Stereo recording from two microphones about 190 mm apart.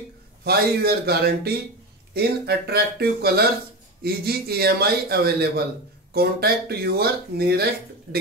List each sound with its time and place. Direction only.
0.4 s a man's voice: 55° right (ahead or behind)